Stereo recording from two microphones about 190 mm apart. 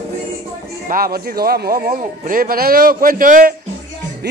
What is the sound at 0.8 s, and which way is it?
Speech, 50° right (ahead or behind).